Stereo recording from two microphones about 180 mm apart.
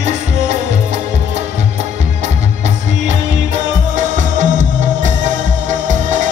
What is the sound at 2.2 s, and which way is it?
Music, 40° right (ahead or behind).